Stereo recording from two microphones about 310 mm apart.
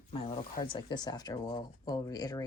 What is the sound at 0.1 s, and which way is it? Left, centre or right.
Speech, centre.